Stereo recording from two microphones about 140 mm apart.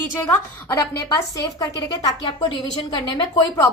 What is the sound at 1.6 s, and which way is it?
A woman's voice, 25° left (ahead or behind).